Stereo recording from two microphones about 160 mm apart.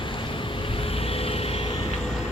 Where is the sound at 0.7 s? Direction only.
35° left (ahead or behind).